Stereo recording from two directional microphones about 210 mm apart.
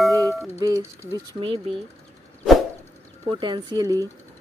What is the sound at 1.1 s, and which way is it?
Speech, 25° right (ahead or behind).